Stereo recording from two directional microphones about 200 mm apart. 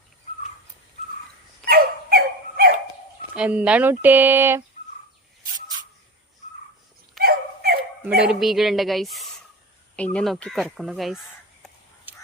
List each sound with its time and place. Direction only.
1.6 s dog: 50° right (ahead or behind)
3.3 s speech: 5° right (ahead or behind)
7.2 s dog: 50° right (ahead or behind)
8.3 s speech: centre (ahead or behind)
12.1 s a sound: 10° right (ahead or behind)